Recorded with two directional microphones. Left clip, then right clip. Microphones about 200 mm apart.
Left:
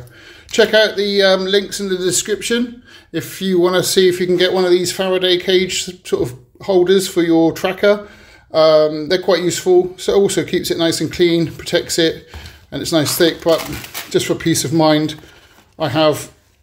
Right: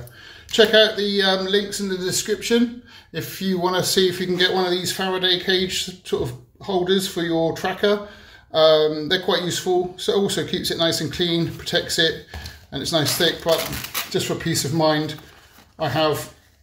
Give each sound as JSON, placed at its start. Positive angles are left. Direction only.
{"t": 0.5, "sound": "speech", "side_deg": 35}